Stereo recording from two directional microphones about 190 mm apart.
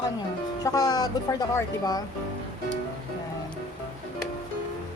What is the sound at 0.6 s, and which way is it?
Speech, 20° left (ahead or behind).